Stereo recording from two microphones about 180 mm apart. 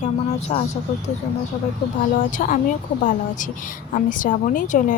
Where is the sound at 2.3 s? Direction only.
45° left (ahead or behind).